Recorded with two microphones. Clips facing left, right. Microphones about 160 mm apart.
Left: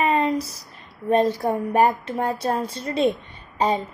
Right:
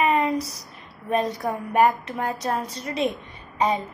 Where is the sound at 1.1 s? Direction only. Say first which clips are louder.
Left 5 dB; 30° left (ahead or behind).